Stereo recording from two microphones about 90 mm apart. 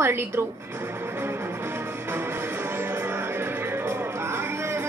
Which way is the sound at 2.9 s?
25° right (ahead or behind).